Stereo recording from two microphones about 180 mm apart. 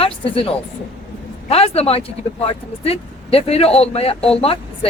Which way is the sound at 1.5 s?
35° left (ahead or behind).